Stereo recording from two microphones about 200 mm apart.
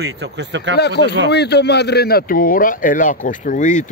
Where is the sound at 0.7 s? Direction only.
55° left (ahead or behind).